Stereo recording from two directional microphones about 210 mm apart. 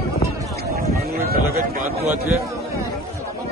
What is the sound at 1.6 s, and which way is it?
Speech, 40° right (ahead or behind).